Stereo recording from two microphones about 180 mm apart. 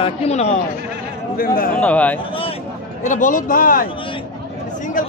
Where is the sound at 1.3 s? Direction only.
50° left (ahead or behind).